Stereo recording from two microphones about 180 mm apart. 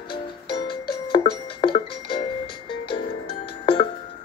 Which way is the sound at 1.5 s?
30° left (ahead or behind).